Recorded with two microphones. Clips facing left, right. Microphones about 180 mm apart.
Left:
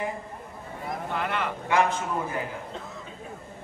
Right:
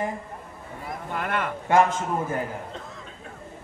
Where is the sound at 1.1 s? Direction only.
50° right (ahead or behind).